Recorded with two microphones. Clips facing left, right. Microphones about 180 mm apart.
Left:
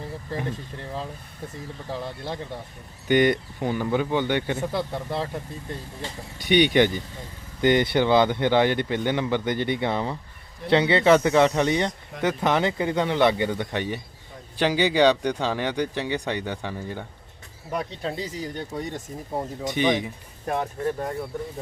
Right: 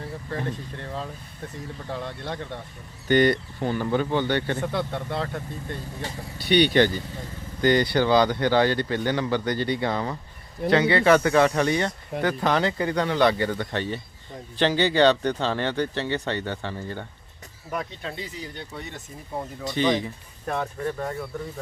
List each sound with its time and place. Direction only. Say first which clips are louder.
1.9 s speech: left 1 dB; 10° left (ahead or behind)
6.4 s speech: even; 15° left (ahead or behind)
17.7 s speech: left 3 dB; 30° left (ahead or behind)
18.2 s speech: left 5 dB; 40° left (ahead or behind)
19.4 s speech: even; 20° left (ahead or behind)